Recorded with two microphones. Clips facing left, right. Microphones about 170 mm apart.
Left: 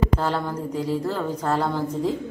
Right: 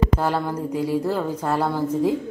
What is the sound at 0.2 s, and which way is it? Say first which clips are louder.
Speech: right 2 dB; 10° right (ahead or behind).